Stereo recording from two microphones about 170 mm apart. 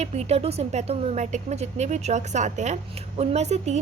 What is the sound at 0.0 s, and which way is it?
Speech, 40° right (ahead or behind).